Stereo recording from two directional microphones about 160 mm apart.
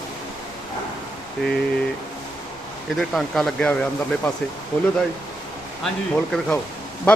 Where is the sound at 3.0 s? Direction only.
Centre (ahead or behind).